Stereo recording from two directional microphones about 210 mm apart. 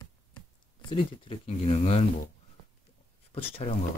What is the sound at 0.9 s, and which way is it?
Speech, 25° left (ahead or behind).